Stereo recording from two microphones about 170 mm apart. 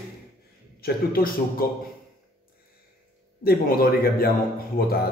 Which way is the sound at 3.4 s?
60° left (ahead or behind).